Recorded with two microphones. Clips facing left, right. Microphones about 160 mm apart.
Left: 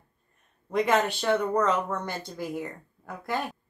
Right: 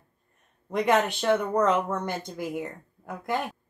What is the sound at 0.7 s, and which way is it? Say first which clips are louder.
A woman's voice: right 1 dB; 15° right (ahead or behind).